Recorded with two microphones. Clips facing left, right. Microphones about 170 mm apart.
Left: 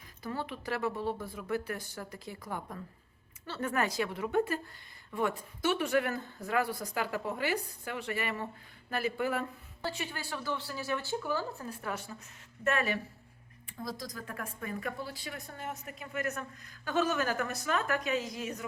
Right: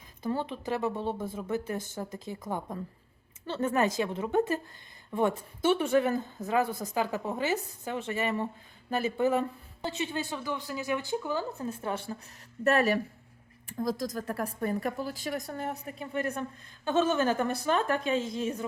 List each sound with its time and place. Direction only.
0.2 s a woman's voice: 25° right (ahead or behind)
12.6 s speech: 40° right (ahead or behind)